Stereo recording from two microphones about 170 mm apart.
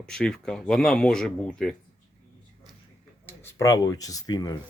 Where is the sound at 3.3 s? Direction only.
15° left (ahead or behind).